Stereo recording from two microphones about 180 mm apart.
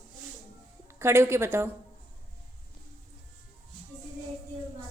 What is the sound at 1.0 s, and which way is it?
Speech, 15° right (ahead or behind).